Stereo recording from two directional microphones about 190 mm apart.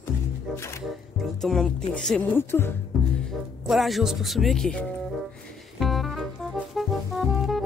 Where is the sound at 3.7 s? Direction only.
Centre (ahead or behind).